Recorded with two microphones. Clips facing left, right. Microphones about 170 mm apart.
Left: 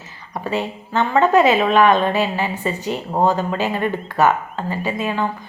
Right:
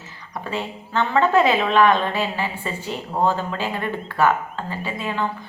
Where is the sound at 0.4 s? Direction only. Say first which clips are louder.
Left 5 dB; 15° left (ahead or behind).